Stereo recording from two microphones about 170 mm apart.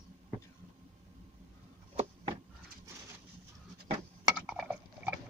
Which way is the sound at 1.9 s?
35° right (ahead or behind).